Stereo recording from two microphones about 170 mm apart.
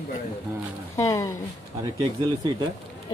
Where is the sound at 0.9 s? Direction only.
20° left (ahead or behind).